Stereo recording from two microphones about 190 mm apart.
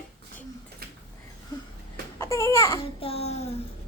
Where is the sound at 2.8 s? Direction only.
30° left (ahead or behind).